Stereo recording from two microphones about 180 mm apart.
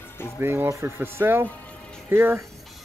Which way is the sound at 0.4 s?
15° right (ahead or behind).